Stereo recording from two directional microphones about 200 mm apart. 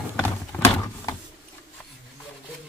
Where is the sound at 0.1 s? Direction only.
5° left (ahead or behind).